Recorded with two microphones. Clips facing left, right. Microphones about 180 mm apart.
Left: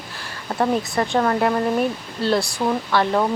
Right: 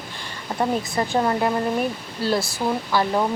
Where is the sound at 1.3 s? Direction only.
Centre (ahead or behind).